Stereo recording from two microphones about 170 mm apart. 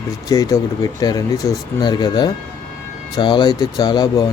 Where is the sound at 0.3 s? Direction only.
20° left (ahead or behind).